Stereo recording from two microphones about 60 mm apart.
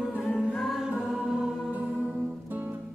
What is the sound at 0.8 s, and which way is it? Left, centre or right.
Music, centre.